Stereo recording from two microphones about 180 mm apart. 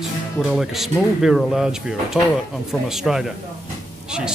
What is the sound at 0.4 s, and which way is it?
Speech, centre (ahead or behind).